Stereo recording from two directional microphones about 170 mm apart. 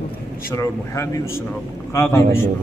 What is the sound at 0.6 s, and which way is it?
A man's voice, 15° left (ahead or behind).